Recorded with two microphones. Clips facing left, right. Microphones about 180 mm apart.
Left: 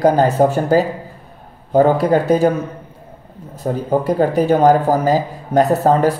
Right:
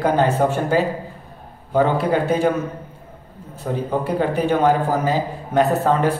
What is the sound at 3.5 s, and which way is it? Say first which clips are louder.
Speech: left 5 dB; 40° left (ahead or behind).